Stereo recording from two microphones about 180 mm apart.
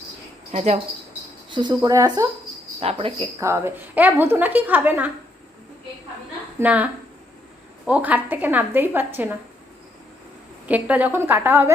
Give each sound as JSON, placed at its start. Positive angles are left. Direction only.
{"t": 0.5, "sound": "speech", "side_deg": -40}
{"t": 1.5, "sound": "speech", "side_deg": -25}
{"t": 2.8, "sound": "speech", "side_deg": -30}
{"t": 3.4, "sound": "a woman's voice", "side_deg": -15}
{"t": 6.6, "sound": "a woman's voice", "side_deg": -10}
{"t": 10.7, "sound": "a woman's voice", "side_deg": -10}